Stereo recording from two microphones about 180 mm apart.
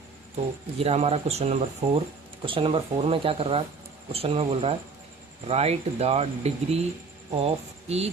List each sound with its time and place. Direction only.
0.8 s speech: 35° right (ahead or behind)